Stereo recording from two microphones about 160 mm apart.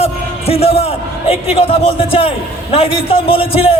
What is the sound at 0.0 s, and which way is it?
A man's voice, 40° left (ahead or behind).